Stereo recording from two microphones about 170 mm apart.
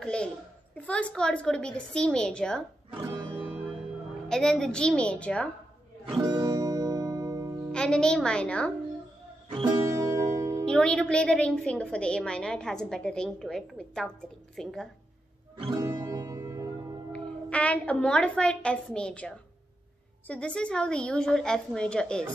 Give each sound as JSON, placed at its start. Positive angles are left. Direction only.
{"t": 0.0, "sound": "a child's voice", "side_deg": 5}
{"t": 3.1, "sound": "music", "side_deg": -15}
{"t": 4.3, "sound": "a woman's voice", "side_deg": 5}
{"t": 6.0, "sound": "music", "side_deg": -25}
{"t": 7.7, "sound": "a woman's voice", "side_deg": 5}
{"t": 9.5, "sound": "music", "side_deg": -25}
{"t": 10.6, "sound": "a woman's voice", "side_deg": 5}
{"t": 15.5, "sound": "music", "side_deg": -30}
{"t": 17.1, "sound": "a woman's voice", "side_deg": 5}